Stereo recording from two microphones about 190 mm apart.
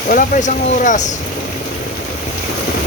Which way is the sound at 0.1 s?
45° left (ahead or behind).